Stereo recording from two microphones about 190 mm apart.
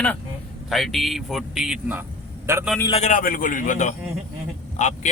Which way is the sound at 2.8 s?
35° left (ahead or behind).